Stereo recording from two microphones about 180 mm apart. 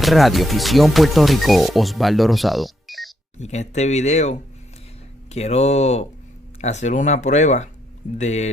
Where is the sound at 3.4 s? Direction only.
40° left (ahead or behind).